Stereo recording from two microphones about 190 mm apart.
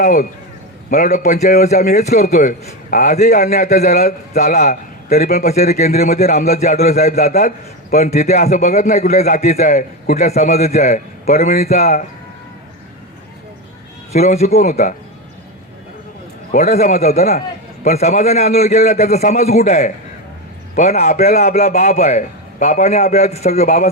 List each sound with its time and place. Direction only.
0.0 s a man's voice: 40° left (ahead or behind)
14.1 s a man's voice: 35° left (ahead or behind)
16.5 s a man's voice: 40° left (ahead or behind)